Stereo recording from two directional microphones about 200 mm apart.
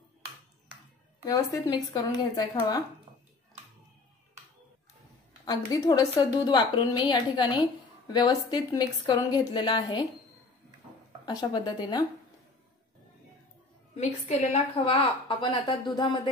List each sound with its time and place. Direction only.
1.2 s a woman's voice: 20° left (ahead or behind)
5.4 s a woman's voice: 20° left (ahead or behind)
11.2 s a woman's voice: 20° left (ahead or behind)
13.9 s a woman's voice: 35° left (ahead or behind)